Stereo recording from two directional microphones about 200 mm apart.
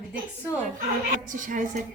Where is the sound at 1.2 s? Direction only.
40° right (ahead or behind).